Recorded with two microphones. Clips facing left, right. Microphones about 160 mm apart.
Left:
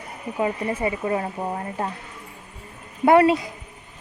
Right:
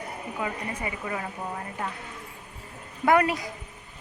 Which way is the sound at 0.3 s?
30° left (ahead or behind).